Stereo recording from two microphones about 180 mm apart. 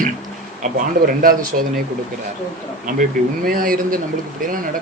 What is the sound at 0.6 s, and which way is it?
Speech, 45° right (ahead or behind).